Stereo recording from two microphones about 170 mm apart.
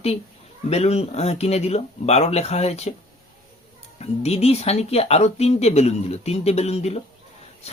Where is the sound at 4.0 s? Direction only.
40° left (ahead or behind).